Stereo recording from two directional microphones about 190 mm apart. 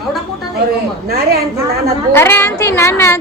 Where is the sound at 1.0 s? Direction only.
55° right (ahead or behind).